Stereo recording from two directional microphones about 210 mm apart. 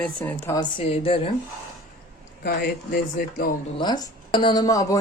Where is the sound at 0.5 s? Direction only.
25° left (ahead or behind).